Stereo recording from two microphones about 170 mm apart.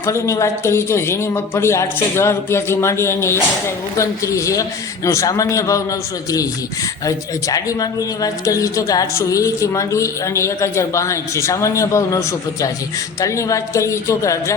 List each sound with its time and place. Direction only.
0.0 s a man's voice: 15° left (ahead or behind)
7.0 s a man's voice: 20° left (ahead or behind)